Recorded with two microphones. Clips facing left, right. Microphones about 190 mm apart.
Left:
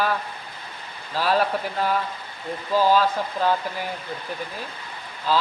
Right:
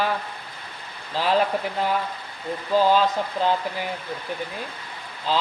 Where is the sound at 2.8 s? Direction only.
20° right (ahead or behind).